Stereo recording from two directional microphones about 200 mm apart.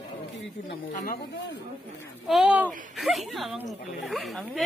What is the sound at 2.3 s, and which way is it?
Speech, 5° right (ahead or behind).